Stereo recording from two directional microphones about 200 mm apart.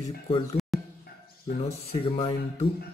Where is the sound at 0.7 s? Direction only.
Centre (ahead or behind).